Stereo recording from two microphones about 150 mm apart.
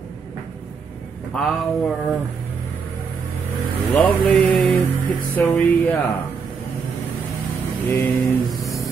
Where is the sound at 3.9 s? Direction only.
5° left (ahead or behind).